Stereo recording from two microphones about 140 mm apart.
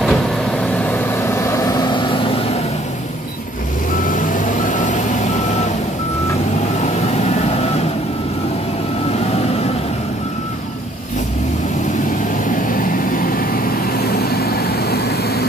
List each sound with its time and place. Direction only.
0.0 s vehicle: 5° left (ahead or behind); by 2.6 s 40° left (ahead or behind)
4.0 s vehicle: 65° left (ahead or behind)
6.8 s vehicle: 50° left (ahead or behind)
12.7 s vehicle: 80° left